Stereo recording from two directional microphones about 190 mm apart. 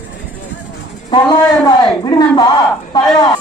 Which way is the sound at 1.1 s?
20° left (ahead or behind).